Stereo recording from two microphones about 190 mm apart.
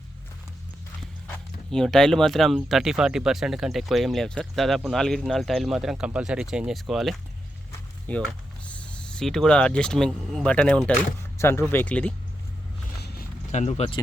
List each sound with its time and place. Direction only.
1.7 s speech: centre (ahead or behind)
13.5 s speech: 35° left (ahead or behind)